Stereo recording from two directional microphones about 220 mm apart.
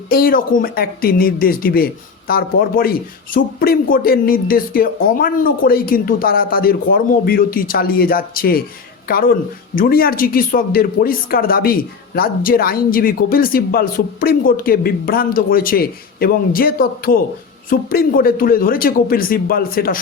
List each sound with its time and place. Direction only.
0.1 s speech: 40° left (ahead or behind)